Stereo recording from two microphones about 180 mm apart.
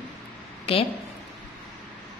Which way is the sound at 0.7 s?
30° left (ahead or behind).